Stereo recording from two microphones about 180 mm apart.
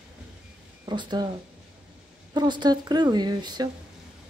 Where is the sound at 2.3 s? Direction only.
25° right (ahead or behind).